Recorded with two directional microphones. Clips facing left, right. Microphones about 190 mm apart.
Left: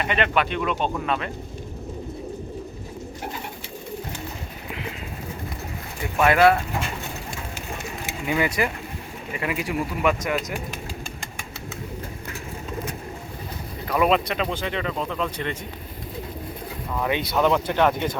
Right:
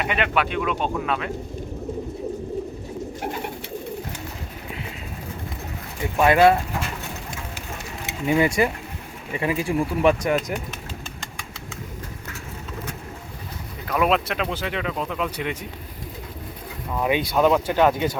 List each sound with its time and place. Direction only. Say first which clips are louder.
0.0 s speech: even; 5° right (ahead or behind)
6.1 s speech: right 1 dB; 20° right (ahead or behind)
8.0 s speech: right 4 dB; 25° right (ahead or behind)
13.8 s speech: left 1 dB; centre (ahead or behind)
17.0 s speech: right 2 dB; 15° right (ahead or behind)